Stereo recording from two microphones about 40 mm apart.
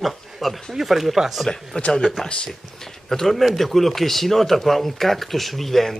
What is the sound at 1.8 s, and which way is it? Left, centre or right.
Speech, left.